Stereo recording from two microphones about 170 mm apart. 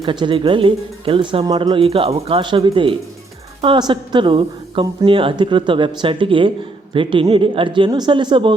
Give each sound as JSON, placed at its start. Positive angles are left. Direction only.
{"t": 0.0, "sound": "a woman's voice", "side_deg": -30}